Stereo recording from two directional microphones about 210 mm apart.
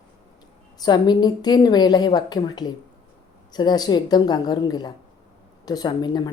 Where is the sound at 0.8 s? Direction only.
20° left (ahead or behind).